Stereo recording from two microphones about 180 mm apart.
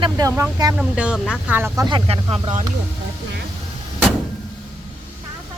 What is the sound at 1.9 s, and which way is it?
Speech, 30° right (ahead or behind).